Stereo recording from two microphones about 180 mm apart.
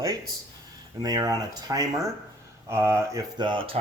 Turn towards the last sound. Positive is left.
turn(degrees=-25)  # may be behind; listen again after turning